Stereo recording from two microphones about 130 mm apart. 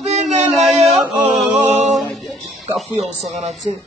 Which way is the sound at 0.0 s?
60° right (ahead or behind).